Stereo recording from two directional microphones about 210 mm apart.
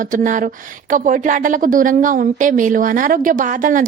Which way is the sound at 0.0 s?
40° right (ahead or behind).